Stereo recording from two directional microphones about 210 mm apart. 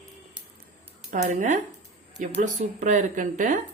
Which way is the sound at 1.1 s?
35° right (ahead or behind).